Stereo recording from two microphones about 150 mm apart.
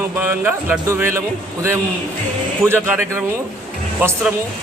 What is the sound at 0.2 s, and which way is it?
Speech, 15° right (ahead or behind).